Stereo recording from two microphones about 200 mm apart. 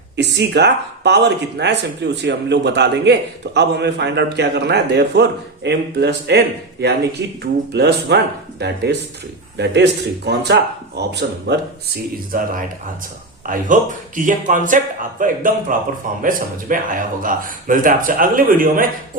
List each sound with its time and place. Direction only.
0.2 s speech: 60° right (ahead or behind)
12.3 s speech: 45° right (ahead or behind)